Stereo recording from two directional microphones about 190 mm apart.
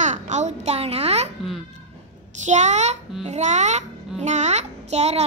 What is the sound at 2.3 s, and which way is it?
A child's voice, 40° right (ahead or behind).